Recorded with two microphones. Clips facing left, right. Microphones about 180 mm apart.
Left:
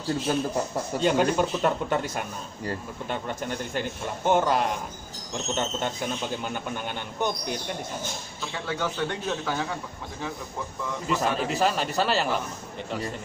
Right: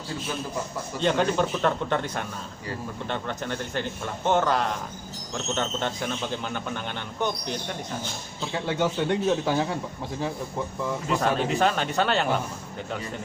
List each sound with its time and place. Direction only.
0.3 s speech: 45° left (ahead or behind)
1.0 s a man's voice: 10° left (ahead or behind)
8.5 s a man's voice: 25° right (ahead or behind)
11.1 s a man's voice: centre (ahead or behind)